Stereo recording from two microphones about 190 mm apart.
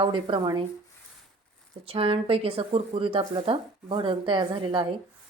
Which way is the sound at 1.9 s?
30° right (ahead or behind).